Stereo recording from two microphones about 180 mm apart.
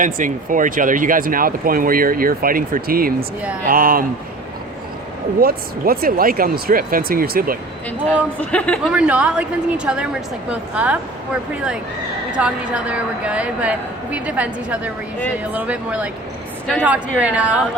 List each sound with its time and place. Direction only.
0.0 s speech: 45° right (ahead or behind)
5.4 s speech: 55° right (ahead or behind)
8.4 s speech: 5° left (ahead or behind)
8.9 s a woman's voice: 5° right (ahead or behind)
12.4 s a woman's voice: 5° right (ahead or behind)